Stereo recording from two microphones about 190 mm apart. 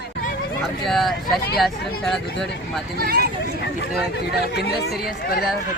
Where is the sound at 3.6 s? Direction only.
60° left (ahead or behind).